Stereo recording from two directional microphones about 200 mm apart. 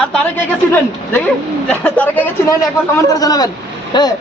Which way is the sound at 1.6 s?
5° left (ahead or behind).